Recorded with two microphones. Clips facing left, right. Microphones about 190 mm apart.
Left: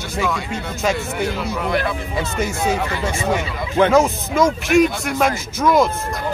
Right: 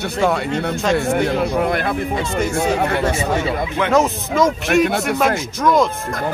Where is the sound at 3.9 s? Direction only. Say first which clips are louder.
Even; centre (ahead or behind).